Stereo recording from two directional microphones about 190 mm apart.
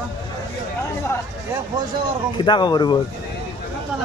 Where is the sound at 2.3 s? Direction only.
25° left (ahead or behind).